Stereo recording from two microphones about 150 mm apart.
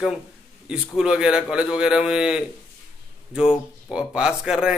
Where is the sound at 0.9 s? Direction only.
5° right (ahead or behind).